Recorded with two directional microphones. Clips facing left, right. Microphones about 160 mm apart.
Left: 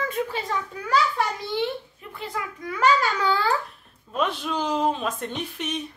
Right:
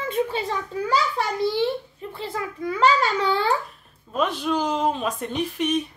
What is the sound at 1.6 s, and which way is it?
A child's voice, 30° right (ahead or behind).